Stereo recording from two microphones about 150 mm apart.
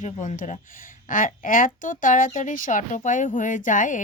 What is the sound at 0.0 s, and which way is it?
Speech, 55° left (ahead or behind).